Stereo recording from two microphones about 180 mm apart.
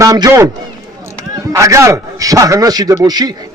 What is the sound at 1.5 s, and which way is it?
A man's voice, 15° right (ahead or behind).